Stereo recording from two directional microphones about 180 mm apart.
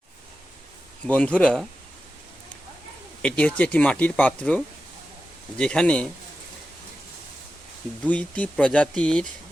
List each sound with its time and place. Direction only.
1.0 s speech: 5° left (ahead or behind)
3.2 s speech: 5° left (ahead or behind)
8.0 s speech: 5° left (ahead or behind)